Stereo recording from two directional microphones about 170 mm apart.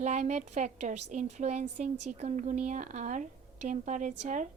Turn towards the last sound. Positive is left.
turn(degrees=-45)  # may be behind; listen again after turning